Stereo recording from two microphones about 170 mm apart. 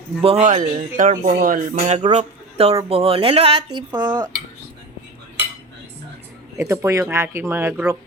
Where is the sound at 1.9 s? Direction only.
35° right (ahead or behind).